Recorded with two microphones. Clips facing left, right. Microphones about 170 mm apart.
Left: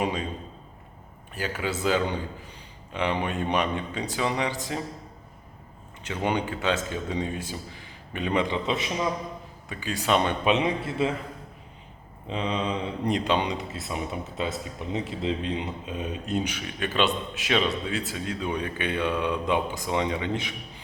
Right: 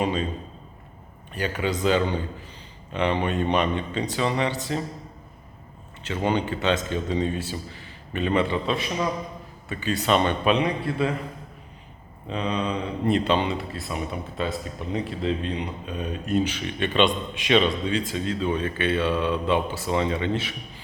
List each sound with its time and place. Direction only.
0.0 s a sound: 10° left (ahead or behind)
1.3 s speech: 10° left (ahead or behind)
6.2 s speech: 10° left (ahead or behind)
12.3 s speech: 20° left (ahead or behind)